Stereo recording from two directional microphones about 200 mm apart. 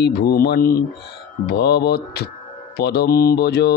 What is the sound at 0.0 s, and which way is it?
Speech, 50° left (ahead or behind).